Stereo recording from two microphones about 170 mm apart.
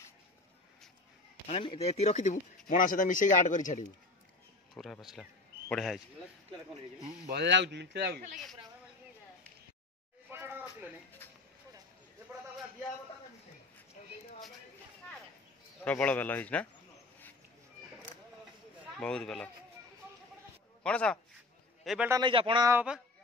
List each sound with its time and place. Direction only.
1.5 s speech: 30° left (ahead or behind); by 3.8 s 50° left (ahead or behind)
4.7 s speech: centre (ahead or behind)
7.2 s a man's voice: 85° right
10.3 s a sound: 15° right (ahead or behind)
15.8 s speech: 10° left (ahead or behind)
18.9 s speech: 5° left (ahead or behind)
20.8 s speech: 5° left (ahead or behind)
21.8 s speech: 5° right (ahead or behind)
22.1 s a man's voice: 30° right (ahead or behind)
22.7 s speech: 10° right (ahead or behind)